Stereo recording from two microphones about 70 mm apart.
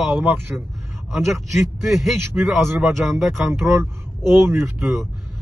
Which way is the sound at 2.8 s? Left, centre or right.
Centre.